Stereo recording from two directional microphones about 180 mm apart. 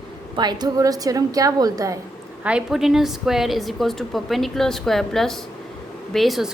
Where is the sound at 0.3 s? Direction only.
25° right (ahead or behind).